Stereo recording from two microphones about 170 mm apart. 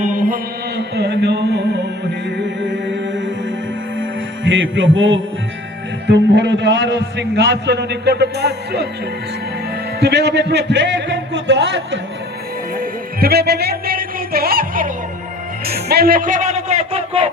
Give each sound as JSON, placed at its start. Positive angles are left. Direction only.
{"t": 0.0, "sound": "mantra", "side_deg": -50}
{"t": 0.8, "sound": "music", "side_deg": -80}
{"t": 4.4, "sound": "a man's voice", "side_deg": -90}
{"t": 10.0, "sound": "a man's voice", "side_deg": -85}
{"t": 12.8, "sound": "music", "side_deg": -60}
{"t": 15.6, "sound": "speech", "side_deg": -65}